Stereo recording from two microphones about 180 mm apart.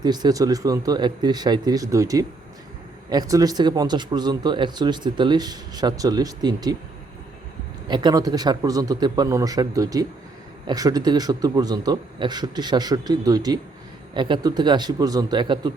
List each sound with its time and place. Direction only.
0.0 s speech: 25° right (ahead or behind)
7.9 s speech: 25° right (ahead or behind)